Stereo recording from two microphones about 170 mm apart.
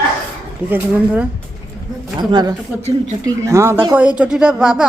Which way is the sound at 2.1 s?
25° right (ahead or behind).